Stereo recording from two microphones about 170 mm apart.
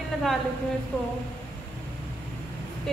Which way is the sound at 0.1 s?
Centre (ahead or behind).